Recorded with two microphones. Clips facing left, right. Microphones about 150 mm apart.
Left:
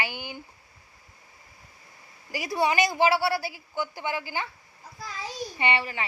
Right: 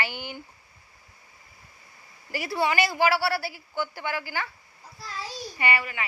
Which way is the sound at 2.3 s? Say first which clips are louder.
Left 1 dB; 15° left (ahead or behind).